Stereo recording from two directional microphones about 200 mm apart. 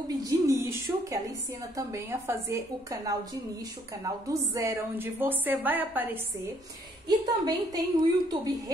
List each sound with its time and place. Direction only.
0.1 s a woman's voice: 15° right (ahead or behind)
7.4 s a woman's voice: 20° right (ahead or behind)